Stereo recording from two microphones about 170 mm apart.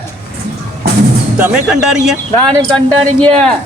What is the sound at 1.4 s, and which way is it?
Speech, 5° right (ahead or behind).